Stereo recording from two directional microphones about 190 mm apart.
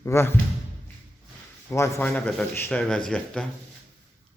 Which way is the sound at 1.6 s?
15° left (ahead or behind).